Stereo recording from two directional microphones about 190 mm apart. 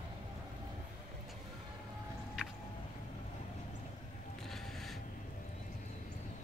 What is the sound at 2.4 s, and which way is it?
Music, 5° right (ahead or behind).